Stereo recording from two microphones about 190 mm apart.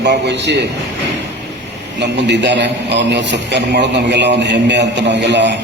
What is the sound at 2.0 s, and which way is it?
A man's voice, 65° right (ahead or behind).